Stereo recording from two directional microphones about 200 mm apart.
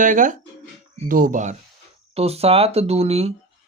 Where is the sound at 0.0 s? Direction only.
40° right (ahead or behind).